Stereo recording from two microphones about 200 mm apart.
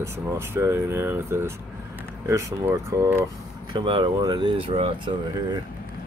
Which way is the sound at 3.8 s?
25° right (ahead or behind).